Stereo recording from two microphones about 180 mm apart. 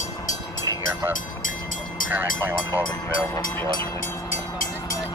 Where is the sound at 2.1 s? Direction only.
10° right (ahead or behind).